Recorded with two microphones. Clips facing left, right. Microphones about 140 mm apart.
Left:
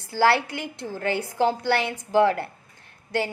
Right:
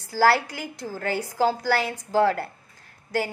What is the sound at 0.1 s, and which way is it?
A woman's voice, 20° left (ahead or behind).